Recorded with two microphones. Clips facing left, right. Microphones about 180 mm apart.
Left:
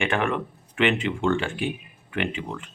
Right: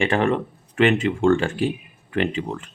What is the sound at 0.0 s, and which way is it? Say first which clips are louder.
A man's voice: right 5 dB; 35° right (ahead or behind).